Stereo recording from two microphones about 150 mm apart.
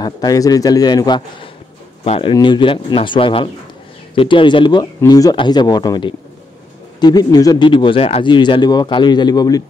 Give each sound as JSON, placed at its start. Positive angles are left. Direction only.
{"t": 0.0, "sound": "speech", "side_deg": 25}